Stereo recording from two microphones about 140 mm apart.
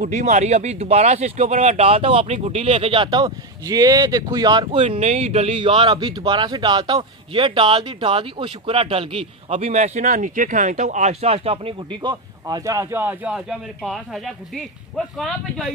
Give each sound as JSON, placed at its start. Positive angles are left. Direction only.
{"t": 0.0, "sound": "speech", "side_deg": -55}
{"t": 9.5, "sound": "speech", "side_deg": -55}